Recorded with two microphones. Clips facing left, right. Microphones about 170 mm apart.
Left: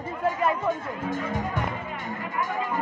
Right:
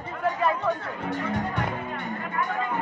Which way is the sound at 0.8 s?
65° right (ahead or behind).